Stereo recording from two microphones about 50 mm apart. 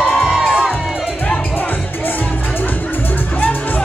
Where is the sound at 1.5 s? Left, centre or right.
Left.